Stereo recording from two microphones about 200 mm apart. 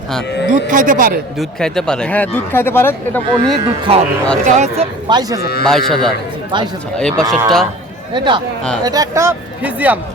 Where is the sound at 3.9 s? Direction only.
30° right (ahead or behind).